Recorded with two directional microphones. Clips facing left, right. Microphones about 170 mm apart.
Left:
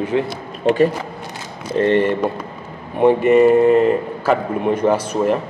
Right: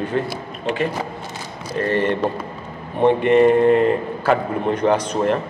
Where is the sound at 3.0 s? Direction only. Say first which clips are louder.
Left 2 dB; 5° left (ahead or behind).